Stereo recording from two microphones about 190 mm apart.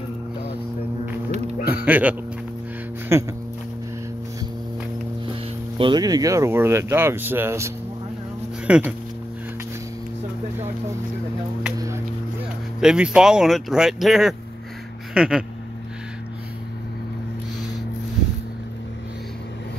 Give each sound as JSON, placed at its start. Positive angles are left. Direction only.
{"t": 1.7, "sound": "speech", "side_deg": -10}
{"t": 5.2, "sound": "speech", "side_deg": -25}
{"t": 12.8, "sound": "speech", "side_deg": -5}